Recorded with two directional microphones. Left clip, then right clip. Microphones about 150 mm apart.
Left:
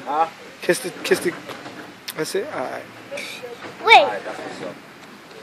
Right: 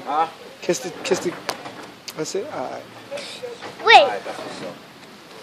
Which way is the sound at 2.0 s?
5° right (ahead or behind).